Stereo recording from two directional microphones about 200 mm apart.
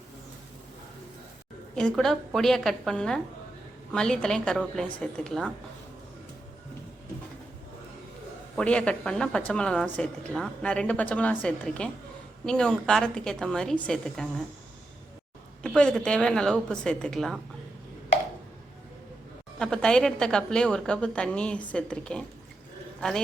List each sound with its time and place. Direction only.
1.7 s a woman's voice: centre (ahead or behind)
8.5 s a woman's voice: 5° left (ahead or behind)
15.6 s a woman's voice: 5° left (ahead or behind)
19.5 s a woman's voice: 5° left (ahead or behind)